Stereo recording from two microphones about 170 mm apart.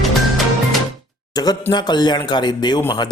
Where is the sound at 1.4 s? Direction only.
20° left (ahead or behind).